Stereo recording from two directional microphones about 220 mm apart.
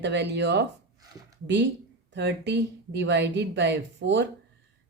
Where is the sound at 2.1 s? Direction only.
50° right (ahead or behind).